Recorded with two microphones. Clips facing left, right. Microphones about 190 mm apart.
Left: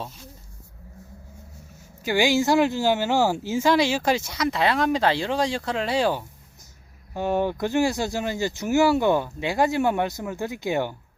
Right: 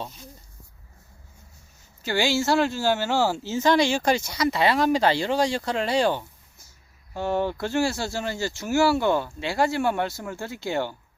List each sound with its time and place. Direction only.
2.0 s speech: 15° left (ahead or behind)
7.1 s speech: 15° left (ahead or behind)